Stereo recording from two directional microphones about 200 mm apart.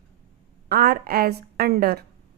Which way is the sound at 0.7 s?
50° right (ahead or behind).